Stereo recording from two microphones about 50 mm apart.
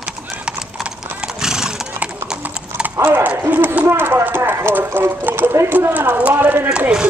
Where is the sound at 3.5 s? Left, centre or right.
Right.